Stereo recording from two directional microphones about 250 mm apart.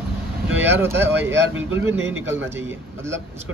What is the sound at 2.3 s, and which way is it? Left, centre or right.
Speech, centre.